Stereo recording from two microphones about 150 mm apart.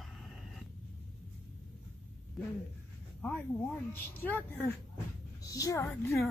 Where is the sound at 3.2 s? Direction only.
10° left (ahead or behind).